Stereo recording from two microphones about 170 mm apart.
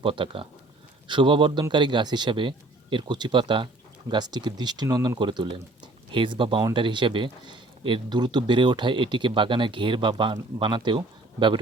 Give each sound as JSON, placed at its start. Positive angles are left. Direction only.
{"t": 0.0, "sound": "speech", "side_deg": -30}